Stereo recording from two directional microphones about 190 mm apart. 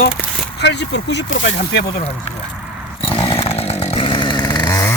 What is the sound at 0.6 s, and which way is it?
Speech, 65° left (ahead or behind).